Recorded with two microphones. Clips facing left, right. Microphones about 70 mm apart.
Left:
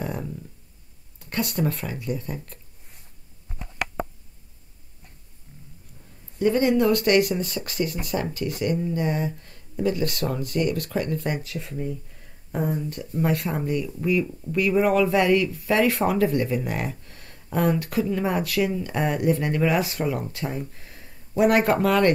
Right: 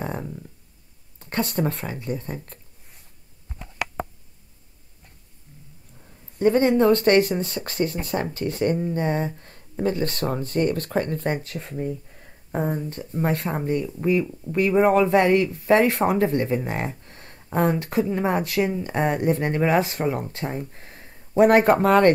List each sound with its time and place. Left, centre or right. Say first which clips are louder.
1.2 s speech: right 1 dB; right
6.4 s speech: right 2 dB; right